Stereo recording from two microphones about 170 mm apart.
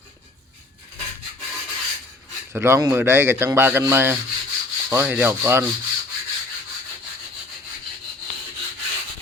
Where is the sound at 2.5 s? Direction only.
15° right (ahead or behind).